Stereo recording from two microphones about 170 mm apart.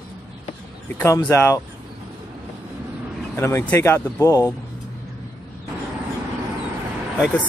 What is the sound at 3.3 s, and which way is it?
Speech, 15° left (ahead or behind).